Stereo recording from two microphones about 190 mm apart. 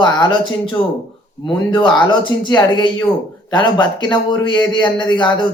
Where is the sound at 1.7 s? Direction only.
25° left (ahead or behind).